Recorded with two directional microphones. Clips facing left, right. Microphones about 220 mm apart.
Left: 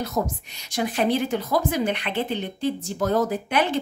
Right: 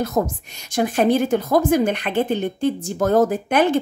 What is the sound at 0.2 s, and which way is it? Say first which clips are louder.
Speech: right 5 dB; 50° right (ahead or behind).